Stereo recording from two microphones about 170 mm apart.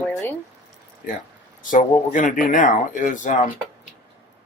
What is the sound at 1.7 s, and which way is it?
Speech, 50° left (ahead or behind).